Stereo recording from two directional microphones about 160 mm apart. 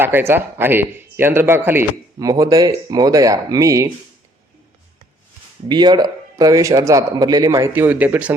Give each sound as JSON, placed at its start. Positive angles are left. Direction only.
{"t": 0.0, "sound": "speech", "side_deg": -15}
{"t": 5.6, "sound": "speech", "side_deg": -30}